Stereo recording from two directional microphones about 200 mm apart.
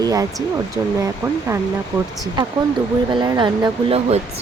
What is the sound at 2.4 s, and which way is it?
Speech, 25° right (ahead or behind).